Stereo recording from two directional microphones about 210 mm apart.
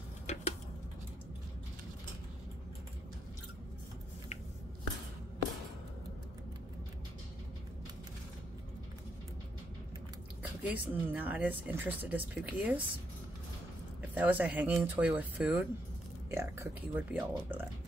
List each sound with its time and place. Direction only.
0.3 s a sound: 35° left (ahead or behind)
10.7 s speech: 10° right (ahead or behind)
14.1 s speech: 10° right (ahead or behind)